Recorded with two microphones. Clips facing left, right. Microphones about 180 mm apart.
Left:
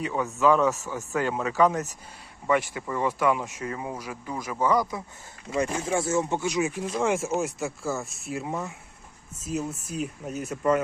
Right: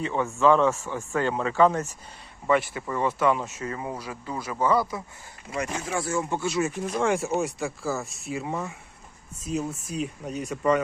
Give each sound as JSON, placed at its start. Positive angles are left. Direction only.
{"t": 0.3, "sound": "speech", "side_deg": 0}
{"t": 5.5, "sound": "speech", "side_deg": 30}
{"t": 7.0, "sound": "speech", "side_deg": 0}